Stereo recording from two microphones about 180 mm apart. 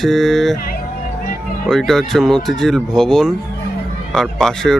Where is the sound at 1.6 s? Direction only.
Centre (ahead or behind).